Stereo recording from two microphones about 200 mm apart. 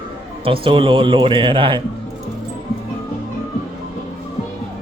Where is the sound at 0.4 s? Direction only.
25° right (ahead or behind).